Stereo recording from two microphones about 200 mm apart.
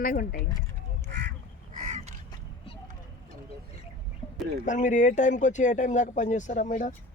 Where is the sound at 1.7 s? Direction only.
40° right (ahead or behind).